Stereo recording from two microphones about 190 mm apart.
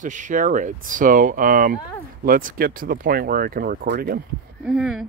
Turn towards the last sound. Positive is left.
turn(degrees=0)  # may be behind; listen again after turning